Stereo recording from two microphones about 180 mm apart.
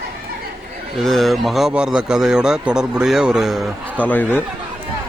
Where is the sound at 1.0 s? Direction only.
Centre (ahead or behind).